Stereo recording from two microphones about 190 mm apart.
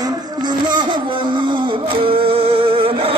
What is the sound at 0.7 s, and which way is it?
Music, 25° right (ahead or behind).